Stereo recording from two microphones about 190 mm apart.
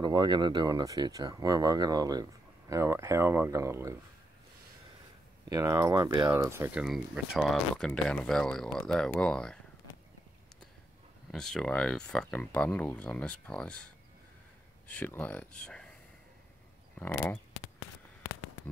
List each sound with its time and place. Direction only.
0.0 s speech: 25° right (ahead or behind)
5.5 s speech: 20° right (ahead or behind); by 9.6 s 5° left (ahead or behind)
11.3 s speech: 5° left (ahead or behind)
14.9 s speech: 5° left (ahead or behind)
17.0 s speech: 10° left (ahead or behind)